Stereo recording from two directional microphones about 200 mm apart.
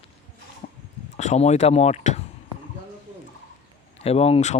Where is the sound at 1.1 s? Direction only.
35° left (ahead or behind).